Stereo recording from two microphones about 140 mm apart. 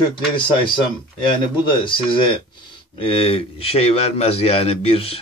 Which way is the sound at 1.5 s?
35° left (ahead or behind).